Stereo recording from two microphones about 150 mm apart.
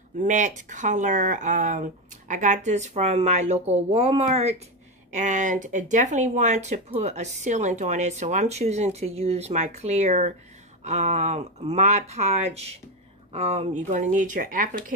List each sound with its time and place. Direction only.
0.2 s speech: 55° right (ahead or behind)
5.1 s speech: 55° right (ahead or behind)